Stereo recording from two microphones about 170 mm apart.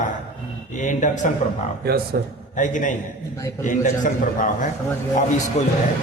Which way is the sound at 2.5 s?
50° left (ahead or behind).